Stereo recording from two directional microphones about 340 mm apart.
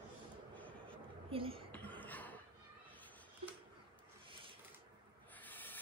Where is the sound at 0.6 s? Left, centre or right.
Centre.